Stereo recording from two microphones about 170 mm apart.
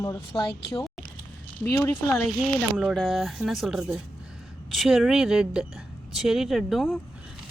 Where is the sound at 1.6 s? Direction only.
20° left (ahead or behind).